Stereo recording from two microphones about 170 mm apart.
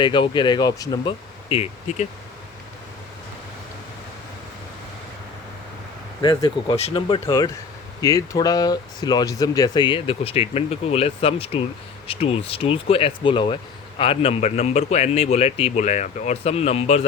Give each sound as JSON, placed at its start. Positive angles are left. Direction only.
{"t": 0.0, "sound": "speech", "side_deg": 25}
{"t": 6.2, "sound": "speech", "side_deg": 25}